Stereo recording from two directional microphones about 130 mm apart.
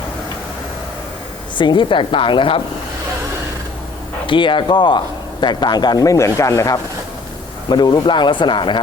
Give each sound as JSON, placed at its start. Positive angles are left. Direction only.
{"t": 1.5, "sound": "speech", "side_deg": 40}
{"t": 4.3, "sound": "speech", "side_deg": 40}